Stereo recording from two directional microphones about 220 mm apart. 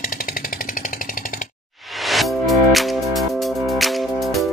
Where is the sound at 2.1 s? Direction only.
Centre (ahead or behind).